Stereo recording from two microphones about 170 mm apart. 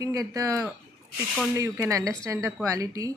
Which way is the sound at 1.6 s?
20° right (ahead or behind).